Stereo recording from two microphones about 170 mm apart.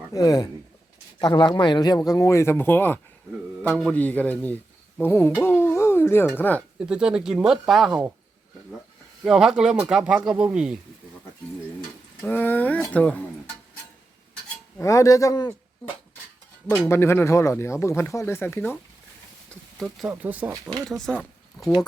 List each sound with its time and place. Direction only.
0.1 s speech: 20° left (ahead or behind)
5.4 s a sound: 15° left (ahead or behind)
6.7 s speech: 5° right (ahead or behind)
9.2 s speech: centre (ahead or behind)
12.2 s speech: 10° left (ahead or behind)
14.8 s speech: 20° left (ahead or behind)
16.8 s speech: 15° left (ahead or behind)
19.8 s speech: 5° right (ahead or behind)
20.8 s speech: 5° left (ahead or behind)